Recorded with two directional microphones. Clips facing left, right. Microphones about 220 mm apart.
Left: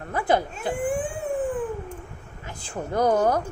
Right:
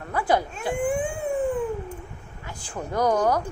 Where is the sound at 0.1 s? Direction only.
20° left (ahead or behind).